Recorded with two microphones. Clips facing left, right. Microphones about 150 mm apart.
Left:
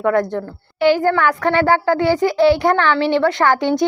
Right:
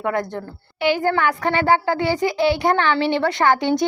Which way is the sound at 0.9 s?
20° right (ahead or behind).